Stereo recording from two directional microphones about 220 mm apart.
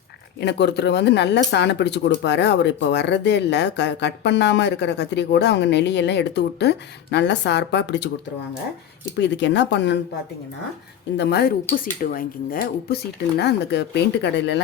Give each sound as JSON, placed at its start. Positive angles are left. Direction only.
{"t": 0.3, "sound": "speech", "side_deg": 50}
{"t": 9.1, "sound": "speech", "side_deg": 55}
{"t": 11.2, "sound": "speech", "side_deg": 50}